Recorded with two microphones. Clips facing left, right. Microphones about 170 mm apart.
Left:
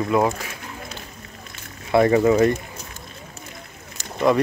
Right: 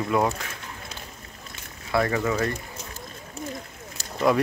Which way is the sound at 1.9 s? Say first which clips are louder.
Left 8 dB; 25° left (ahead or behind).